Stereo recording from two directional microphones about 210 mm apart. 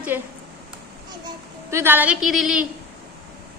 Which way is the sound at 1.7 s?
10° right (ahead or behind).